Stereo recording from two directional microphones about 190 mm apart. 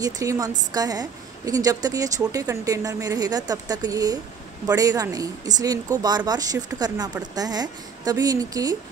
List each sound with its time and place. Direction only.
0.0 s a woman's voice: 20° right (ahead or behind)